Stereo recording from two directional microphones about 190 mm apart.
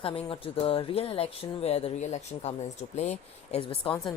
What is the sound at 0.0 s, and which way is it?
Speech, 30° left (ahead or behind).